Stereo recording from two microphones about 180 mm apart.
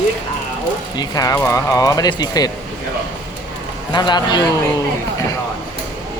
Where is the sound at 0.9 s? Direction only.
20° left (ahead or behind).